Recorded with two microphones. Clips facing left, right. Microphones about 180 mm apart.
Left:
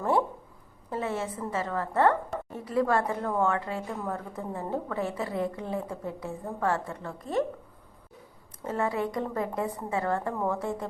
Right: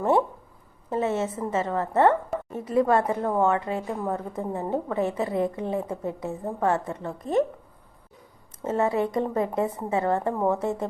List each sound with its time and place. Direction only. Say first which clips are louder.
0.9 s a woman's voice: right 6 dB; 25° right (ahead or behind)
8.6 s a woman's voice: right 5 dB; 25° right (ahead or behind)